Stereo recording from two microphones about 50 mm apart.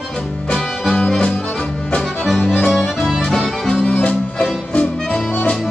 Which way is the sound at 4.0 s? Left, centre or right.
Left.